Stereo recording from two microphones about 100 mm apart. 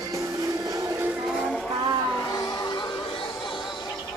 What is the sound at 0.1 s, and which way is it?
Music, 35° right (ahead or behind).